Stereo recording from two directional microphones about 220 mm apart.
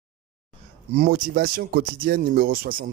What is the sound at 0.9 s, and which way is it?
Speech, 35° right (ahead or behind).